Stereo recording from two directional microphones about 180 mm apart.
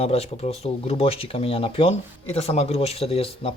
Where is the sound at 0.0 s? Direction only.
35° left (ahead or behind).